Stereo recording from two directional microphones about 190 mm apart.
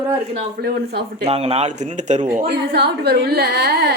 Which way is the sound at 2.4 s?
60° right (ahead or behind).